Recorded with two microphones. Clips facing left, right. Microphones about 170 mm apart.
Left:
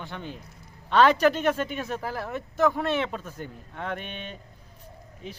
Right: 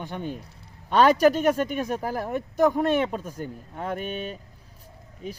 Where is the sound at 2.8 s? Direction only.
40° right (ahead or behind).